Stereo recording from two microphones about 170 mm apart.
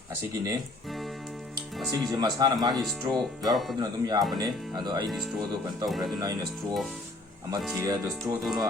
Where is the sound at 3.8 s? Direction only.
25° right (ahead or behind).